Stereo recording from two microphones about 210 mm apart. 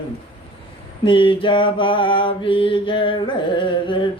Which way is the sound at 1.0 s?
25° left (ahead or behind).